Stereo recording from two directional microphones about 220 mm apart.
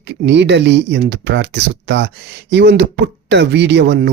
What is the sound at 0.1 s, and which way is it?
Speech, 50° right (ahead or behind).